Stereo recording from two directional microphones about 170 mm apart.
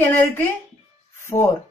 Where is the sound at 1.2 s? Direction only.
15° left (ahead or behind).